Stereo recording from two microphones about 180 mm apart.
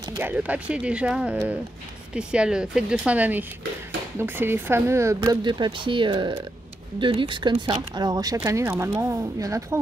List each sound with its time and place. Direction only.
0.2 s speech: 10° right (ahead or behind)